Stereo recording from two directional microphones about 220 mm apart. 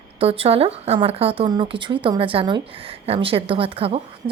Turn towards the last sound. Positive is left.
turn(degrees=-25)  # may be behind; listen again after turning